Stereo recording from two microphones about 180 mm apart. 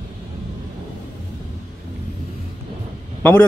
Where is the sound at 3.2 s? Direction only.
10° left (ahead or behind).